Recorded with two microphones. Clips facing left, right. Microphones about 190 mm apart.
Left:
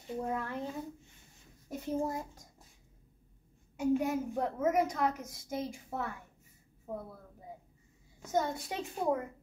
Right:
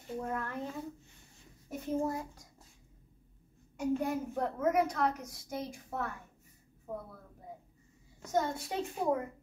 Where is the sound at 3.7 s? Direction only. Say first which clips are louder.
Left 2 dB; 5° left (ahead or behind).